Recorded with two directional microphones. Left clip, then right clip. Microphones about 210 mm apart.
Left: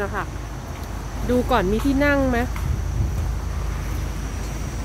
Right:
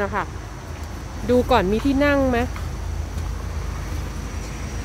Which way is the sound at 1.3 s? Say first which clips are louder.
Right 2 dB; 20° right (ahead or behind).